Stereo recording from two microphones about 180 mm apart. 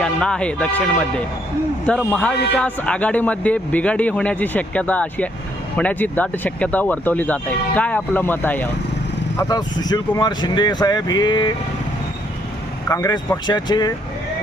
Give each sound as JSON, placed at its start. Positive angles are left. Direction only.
{"t": 0.0, "sound": "speech", "side_deg": 5}
{"t": 9.4, "sound": "speech", "side_deg": 20}
{"t": 12.9, "sound": "speech", "side_deg": 20}